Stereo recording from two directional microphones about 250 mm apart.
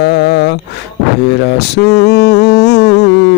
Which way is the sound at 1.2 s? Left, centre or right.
Left.